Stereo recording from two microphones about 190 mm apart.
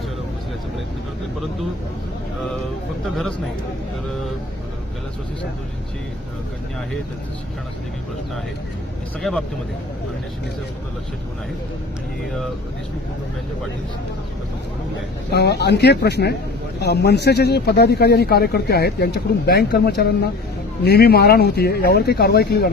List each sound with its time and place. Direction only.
3.2 s a man's voice: centre (ahead or behind)
15.3 s speech: 60° left (ahead or behind)